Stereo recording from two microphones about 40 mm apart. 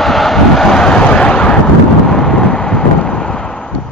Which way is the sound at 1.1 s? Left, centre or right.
Left.